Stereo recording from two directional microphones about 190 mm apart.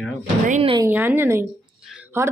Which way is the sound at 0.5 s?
30° right (ahead or behind).